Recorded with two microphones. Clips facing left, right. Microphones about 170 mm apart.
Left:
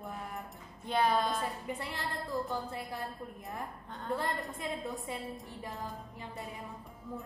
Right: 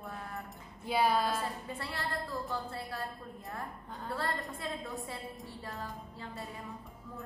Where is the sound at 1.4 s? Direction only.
15° left (ahead or behind).